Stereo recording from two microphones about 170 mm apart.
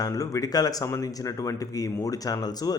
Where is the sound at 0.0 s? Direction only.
20° left (ahead or behind).